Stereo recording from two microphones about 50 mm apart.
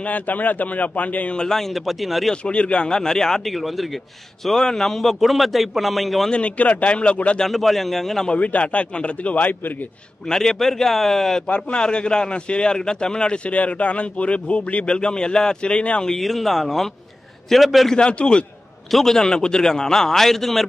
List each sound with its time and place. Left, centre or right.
0.0 s speech: left
1.3 s a man's voice: centre
1.6 s a man's voice: centre
2.4 s speech: left
3.0 s a man's voice: centre
6.3 s speech: left
7.3 s a man's voice: centre
8.3 s speech: left
10.2 s a man's voice: centre
11.4 s speech: left
16.1 s a man's voice: centre
17.8 s speech: centre
18.9 s a man's voice: centre
19.1 s a man's voice: centre